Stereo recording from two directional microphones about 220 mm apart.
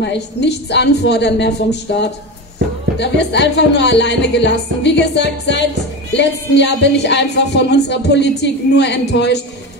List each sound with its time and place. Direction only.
0.0 s a woman's voice: 50° left (ahead or behind)